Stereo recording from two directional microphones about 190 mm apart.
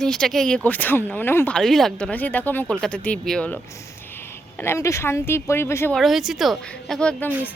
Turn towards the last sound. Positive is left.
turn(degrees=5)  # may be behind; listen again after turning